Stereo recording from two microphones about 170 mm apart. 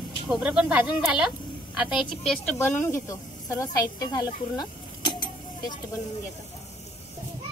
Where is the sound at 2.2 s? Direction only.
5° left (ahead or behind); by 5.8 s 25° left (ahead or behind).